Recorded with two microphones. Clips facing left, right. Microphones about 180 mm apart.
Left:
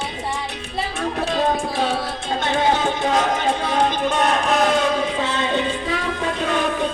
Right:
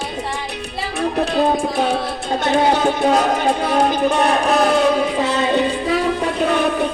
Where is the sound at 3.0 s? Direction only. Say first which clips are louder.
Right 3 dB; 35° right (ahead or behind).